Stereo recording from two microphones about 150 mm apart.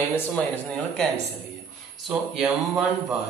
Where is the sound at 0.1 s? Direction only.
10° left (ahead or behind).